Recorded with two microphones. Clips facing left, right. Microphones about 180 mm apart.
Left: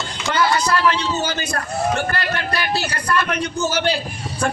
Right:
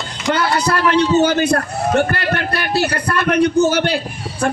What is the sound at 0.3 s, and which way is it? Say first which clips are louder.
A man's voice: right 2 dB; 60° right (ahead or behind).